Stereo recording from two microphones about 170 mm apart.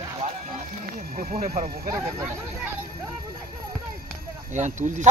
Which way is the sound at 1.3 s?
40° right (ahead or behind).